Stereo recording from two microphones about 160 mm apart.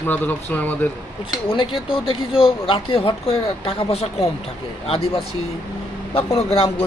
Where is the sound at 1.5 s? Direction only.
35° left (ahead or behind).